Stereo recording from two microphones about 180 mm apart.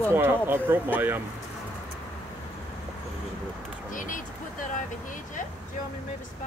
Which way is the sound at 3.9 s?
45° left (ahead or behind).